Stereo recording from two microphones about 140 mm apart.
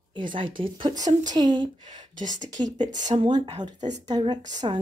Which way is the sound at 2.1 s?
65° right (ahead or behind).